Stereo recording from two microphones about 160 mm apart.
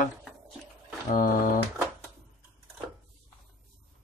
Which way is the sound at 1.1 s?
60° left (ahead or behind).